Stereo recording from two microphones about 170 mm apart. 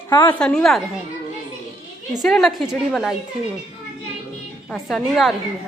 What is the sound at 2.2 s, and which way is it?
Speech, centre (ahead or behind).